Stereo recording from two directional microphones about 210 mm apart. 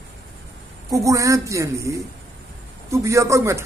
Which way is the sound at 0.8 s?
15° right (ahead or behind).